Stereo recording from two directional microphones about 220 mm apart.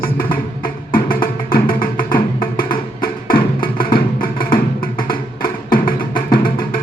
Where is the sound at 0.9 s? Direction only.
40° left (ahead or behind).